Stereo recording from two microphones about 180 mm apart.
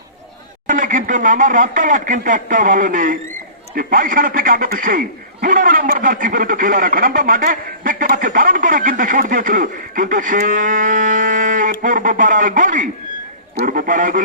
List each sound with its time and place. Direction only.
0.7 s speech: 45° right (ahead or behind)